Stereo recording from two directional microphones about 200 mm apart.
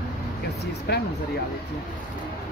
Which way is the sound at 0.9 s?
55° left (ahead or behind).